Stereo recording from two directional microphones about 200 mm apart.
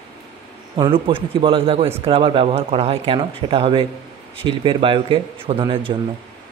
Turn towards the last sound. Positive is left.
turn(degrees=-25)  # may be behind; listen again after turning